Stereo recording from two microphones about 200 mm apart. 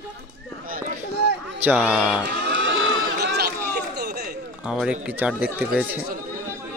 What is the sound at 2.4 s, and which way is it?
Run, 60° right (ahead or behind).